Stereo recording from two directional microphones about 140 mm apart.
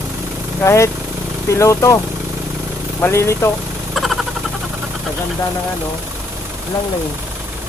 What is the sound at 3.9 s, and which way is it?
Vehicle, centre (ahead or behind).